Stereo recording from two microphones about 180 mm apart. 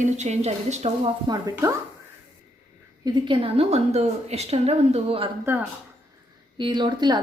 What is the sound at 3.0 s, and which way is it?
A woman's voice, 25° right (ahead or behind).